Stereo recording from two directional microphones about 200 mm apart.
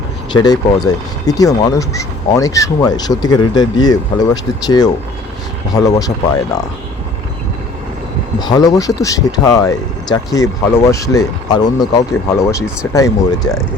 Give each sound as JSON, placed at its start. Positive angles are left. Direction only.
{"t": 0.3, "sound": "speech", "side_deg": 20}
{"t": 8.4, "sound": "speech", "side_deg": 20}